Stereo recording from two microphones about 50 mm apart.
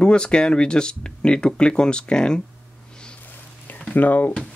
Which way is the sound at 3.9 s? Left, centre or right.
Left.